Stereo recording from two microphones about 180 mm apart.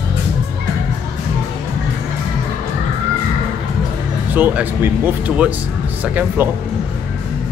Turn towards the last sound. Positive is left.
turn(degrees=-10)  # may be behind; listen again after turning